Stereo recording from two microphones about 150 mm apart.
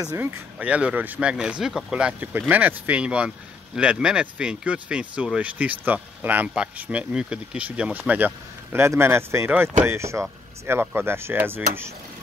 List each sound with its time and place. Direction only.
0.0 s speech: 20° right (ahead or behind)